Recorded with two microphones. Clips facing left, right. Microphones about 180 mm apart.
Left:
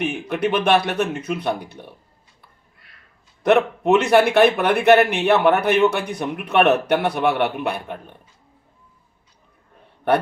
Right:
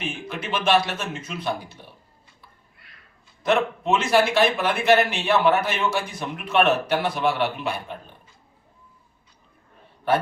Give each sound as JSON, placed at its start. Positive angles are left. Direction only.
{"t": 0.0, "sound": "speech", "side_deg": 65}
{"t": 3.4, "sound": "speech", "side_deg": 60}
{"t": 10.1, "sound": "speech", "side_deg": 60}